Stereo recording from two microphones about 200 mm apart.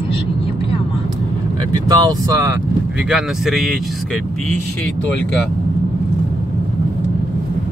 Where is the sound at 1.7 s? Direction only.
20° right (ahead or behind).